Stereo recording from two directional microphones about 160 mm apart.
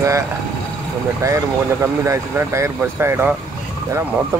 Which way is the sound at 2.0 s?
15° right (ahead or behind).